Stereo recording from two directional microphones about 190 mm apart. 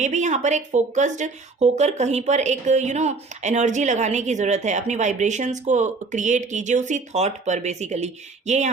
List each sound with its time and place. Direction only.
0.0 s speech: 40° right (ahead or behind)